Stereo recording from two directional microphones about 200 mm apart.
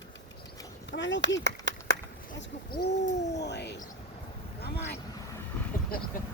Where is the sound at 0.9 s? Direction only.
65° left (ahead or behind).